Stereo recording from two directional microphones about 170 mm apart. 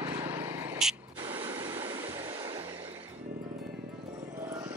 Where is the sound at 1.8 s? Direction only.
25° right (ahead or behind).